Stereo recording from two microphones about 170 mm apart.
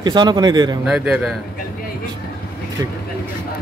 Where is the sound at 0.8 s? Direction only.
5° right (ahead or behind).